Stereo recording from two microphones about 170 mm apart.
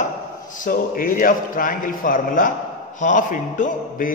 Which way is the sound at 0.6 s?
55° left (ahead or behind).